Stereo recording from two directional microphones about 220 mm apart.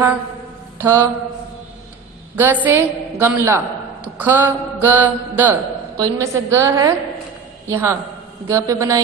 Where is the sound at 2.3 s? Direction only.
10° right (ahead or behind).